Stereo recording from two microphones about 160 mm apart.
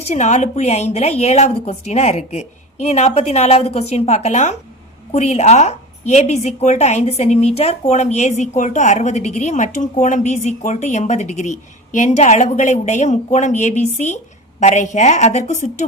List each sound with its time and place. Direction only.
0.1 s a woman's voice: 45° left (ahead or behind)